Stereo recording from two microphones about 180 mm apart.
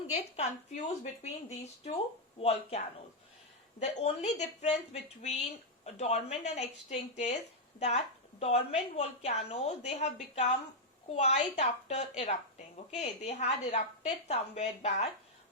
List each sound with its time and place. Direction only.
0.3 s a woman's voice: 35° left (ahead or behind)